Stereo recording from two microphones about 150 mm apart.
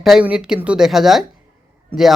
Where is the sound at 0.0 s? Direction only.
5° right (ahead or behind).